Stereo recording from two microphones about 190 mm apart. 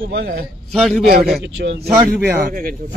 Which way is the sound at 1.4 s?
70° right (ahead or behind).